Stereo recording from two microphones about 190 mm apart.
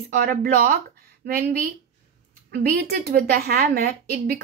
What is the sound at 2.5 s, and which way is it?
A woman's voice, 55° right (ahead or behind).